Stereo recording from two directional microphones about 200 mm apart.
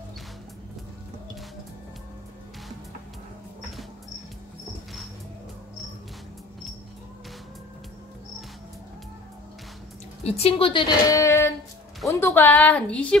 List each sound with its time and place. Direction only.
10.2 s a woman's voice: 30° left (ahead or behind); by 13.2 s 5° left (ahead or behind)